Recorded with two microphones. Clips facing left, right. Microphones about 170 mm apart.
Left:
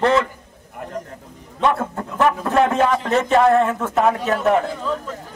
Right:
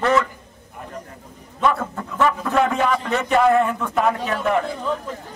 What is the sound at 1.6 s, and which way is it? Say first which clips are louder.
Speech: left 1 dB; 25° left (ahead or behind).